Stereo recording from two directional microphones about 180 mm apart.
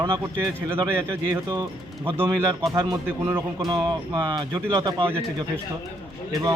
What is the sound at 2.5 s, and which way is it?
Speech, 20° right (ahead or behind).